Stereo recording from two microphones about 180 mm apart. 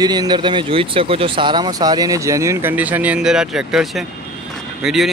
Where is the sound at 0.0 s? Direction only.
20° right (ahead or behind).